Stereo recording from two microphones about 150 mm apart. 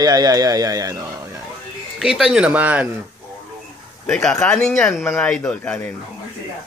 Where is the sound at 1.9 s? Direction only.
5° right (ahead or behind).